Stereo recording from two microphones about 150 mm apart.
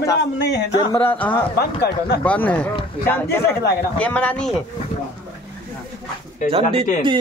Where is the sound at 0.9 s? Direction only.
10° left (ahead or behind).